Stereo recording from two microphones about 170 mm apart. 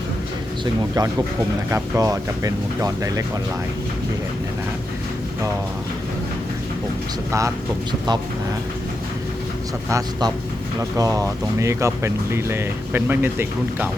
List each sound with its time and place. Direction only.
0.6 s speech: 20° right (ahead or behind)
7.3 s speech: 20° right (ahead or behind)
9.9 s speech: 25° right (ahead or behind)